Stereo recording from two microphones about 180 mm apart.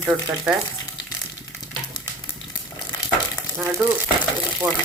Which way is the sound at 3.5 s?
10° right (ahead or behind).